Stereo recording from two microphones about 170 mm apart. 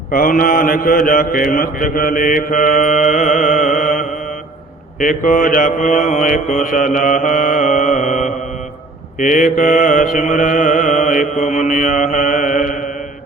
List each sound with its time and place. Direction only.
0.1 s mantra: 55° left (ahead or behind)